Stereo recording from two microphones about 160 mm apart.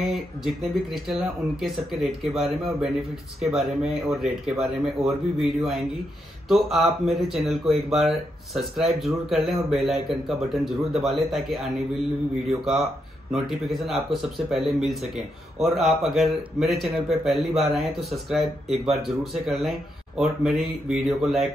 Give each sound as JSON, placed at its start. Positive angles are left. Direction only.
{"t": 0.0, "sound": "speech", "side_deg": 0}